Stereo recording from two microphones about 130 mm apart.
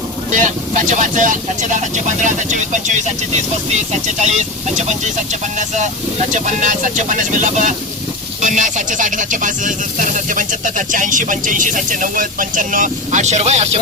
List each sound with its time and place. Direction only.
0.3 s speech: 75° right (ahead or behind)
2.2 s speech: 70° right (ahead or behind)